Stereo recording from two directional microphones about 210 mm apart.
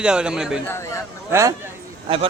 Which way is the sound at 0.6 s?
10° left (ahead or behind).